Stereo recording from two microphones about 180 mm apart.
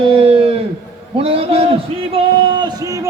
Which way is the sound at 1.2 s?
30° right (ahead or behind).